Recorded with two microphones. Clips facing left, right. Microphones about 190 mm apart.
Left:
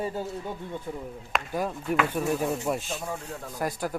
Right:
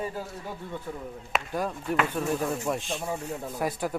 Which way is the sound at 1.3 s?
5° left (ahead or behind).